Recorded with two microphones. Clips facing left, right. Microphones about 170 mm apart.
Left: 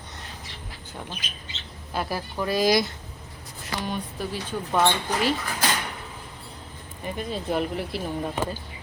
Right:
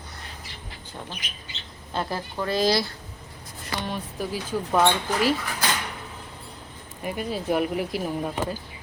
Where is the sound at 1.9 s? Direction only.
10° left (ahead or behind).